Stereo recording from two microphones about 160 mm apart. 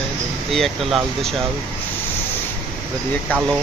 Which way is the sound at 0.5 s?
Centre (ahead or behind).